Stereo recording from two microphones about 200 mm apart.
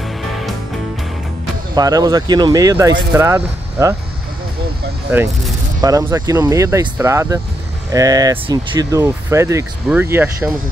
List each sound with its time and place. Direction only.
0.2 s music: centre (ahead or behind)
1.8 s speech: 20° right (ahead or behind)
5.8 s speech: 15° right (ahead or behind)